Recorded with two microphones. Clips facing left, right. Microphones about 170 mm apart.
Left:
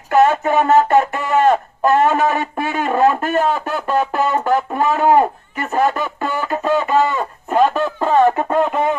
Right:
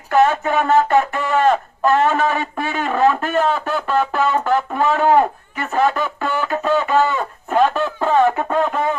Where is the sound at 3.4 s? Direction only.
5° left (ahead or behind).